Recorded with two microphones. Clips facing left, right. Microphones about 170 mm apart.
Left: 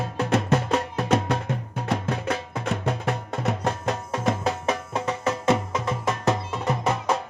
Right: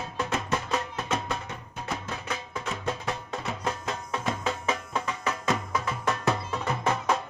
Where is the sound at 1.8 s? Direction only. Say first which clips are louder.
Left 8 dB; 60° left (ahead or behind).